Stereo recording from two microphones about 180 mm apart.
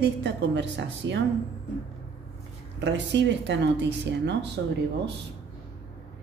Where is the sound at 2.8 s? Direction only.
75° right (ahead or behind).